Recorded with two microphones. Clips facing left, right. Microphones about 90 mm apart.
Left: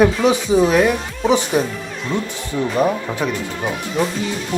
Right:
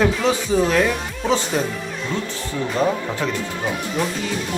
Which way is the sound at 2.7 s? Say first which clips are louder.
Left 2 dB; 15° left (ahead or behind).